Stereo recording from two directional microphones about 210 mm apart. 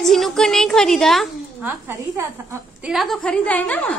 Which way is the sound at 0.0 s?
Centre (ahead or behind).